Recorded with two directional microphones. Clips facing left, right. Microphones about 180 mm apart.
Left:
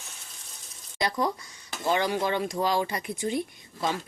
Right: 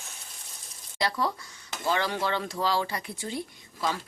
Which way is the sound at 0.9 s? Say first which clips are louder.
Left 1 dB; 20° left (ahead or behind).